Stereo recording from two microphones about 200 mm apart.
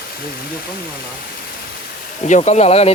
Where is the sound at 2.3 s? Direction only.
35° left (ahead or behind).